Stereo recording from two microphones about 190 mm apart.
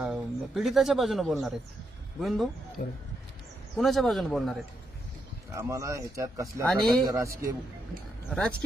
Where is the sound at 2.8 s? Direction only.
40° left (ahead or behind).